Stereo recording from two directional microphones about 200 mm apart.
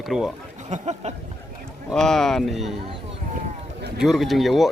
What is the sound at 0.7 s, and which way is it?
Speech, 35° right (ahead or behind).